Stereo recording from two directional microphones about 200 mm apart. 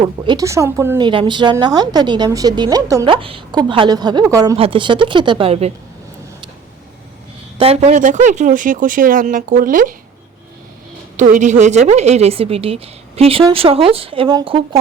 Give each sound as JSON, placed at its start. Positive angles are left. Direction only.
{"t": 0.0, "sound": "speech", "side_deg": -20}
{"t": 7.6, "sound": "speech", "side_deg": -30}
{"t": 11.2, "sound": "speech", "side_deg": -40}